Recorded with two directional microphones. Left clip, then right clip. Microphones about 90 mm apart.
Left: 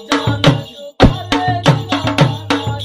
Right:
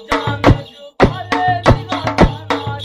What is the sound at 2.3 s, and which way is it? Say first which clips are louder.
Music: left 2 dB; 35° right (ahead or behind).